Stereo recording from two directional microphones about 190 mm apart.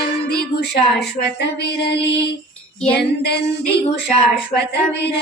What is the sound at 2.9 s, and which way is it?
Female singing, 60° left (ahead or behind).